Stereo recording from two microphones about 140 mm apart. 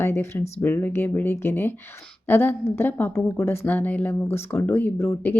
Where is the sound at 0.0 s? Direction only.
20° left (ahead or behind).